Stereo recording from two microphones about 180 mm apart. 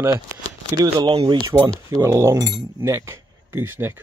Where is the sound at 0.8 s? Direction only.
25° right (ahead or behind).